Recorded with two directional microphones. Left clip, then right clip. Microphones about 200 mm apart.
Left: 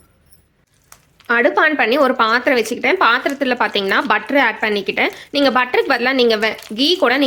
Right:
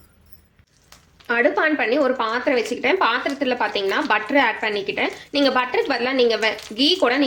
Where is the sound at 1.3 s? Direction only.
25° left (ahead or behind).